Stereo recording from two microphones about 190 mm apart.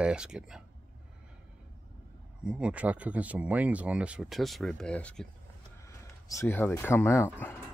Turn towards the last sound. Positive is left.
turn(degrees=10)  # may be behind; listen again after turning